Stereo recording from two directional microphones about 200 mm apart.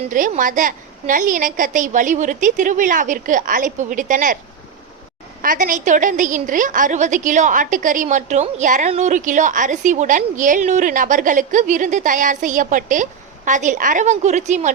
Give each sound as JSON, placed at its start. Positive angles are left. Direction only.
{"t": 0.1, "sound": "a woman's voice", "side_deg": -40}
{"t": 5.4, "sound": "a woman's voice", "side_deg": -45}